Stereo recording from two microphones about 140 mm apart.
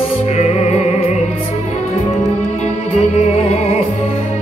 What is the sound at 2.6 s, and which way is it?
Music, 50° left (ahead or behind).